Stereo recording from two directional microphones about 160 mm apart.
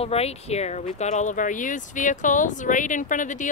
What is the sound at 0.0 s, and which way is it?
Speech, 40° left (ahead or behind).